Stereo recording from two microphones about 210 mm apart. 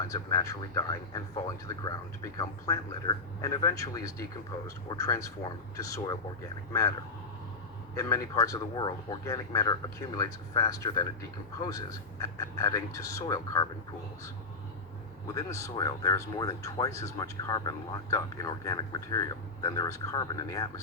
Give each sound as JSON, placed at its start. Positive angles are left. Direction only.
{"t": 0.1, "sound": "speech", "side_deg": 15}
{"t": 7.9, "sound": "speech", "side_deg": 15}
{"t": 15.3, "sound": "speech", "side_deg": 15}